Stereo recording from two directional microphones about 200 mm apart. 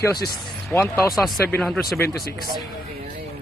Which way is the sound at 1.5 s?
5° left (ahead or behind).